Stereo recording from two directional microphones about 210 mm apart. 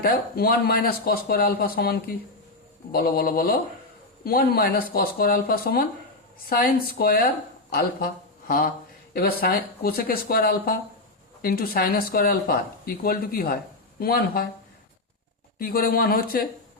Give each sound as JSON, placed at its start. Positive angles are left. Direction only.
{"t": 0.0, "sound": "speech", "side_deg": 45}
{"t": 8.4, "sound": "speech", "side_deg": 40}
{"t": 15.5, "sound": "speech", "side_deg": 45}